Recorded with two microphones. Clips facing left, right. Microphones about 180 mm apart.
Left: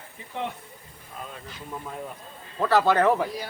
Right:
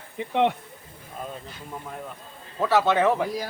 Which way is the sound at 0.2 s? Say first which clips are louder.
Right 17 dB; 80° right.